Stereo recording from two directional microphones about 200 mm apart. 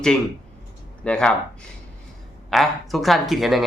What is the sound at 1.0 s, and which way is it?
Speech, 5° left (ahead or behind).